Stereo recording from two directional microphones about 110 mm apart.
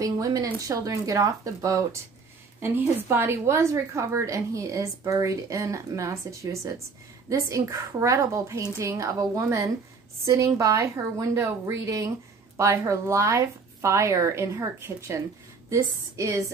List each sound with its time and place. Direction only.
0.0 s speech: 30° right (ahead or behind)
2.6 s a woman's voice: 20° right (ahead or behind)